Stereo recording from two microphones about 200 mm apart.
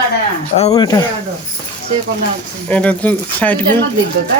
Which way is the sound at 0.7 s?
20° left (ahead or behind).